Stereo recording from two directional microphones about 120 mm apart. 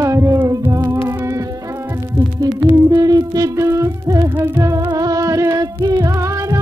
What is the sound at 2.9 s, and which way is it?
Music, 30° right (ahead or behind).